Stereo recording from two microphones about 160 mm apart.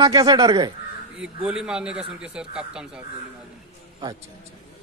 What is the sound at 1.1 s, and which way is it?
Speech, 5° right (ahead or behind).